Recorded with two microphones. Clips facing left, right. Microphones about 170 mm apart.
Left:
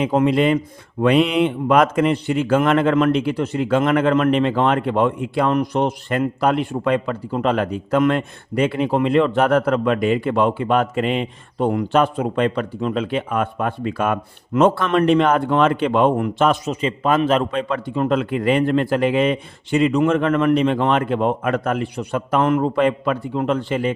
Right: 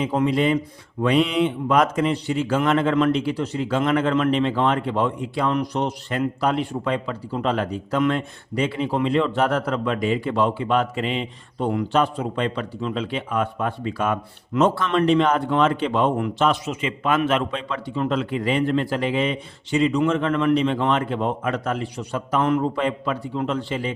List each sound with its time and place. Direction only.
0.0 s a man's voice: 55° left (ahead or behind); by 17.4 s 35° left (ahead or behind)
17.5 s a man's voice: 50° left (ahead or behind)